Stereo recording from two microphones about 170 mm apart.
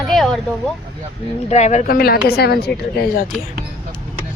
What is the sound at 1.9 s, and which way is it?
A woman's voice, 65° left (ahead or behind).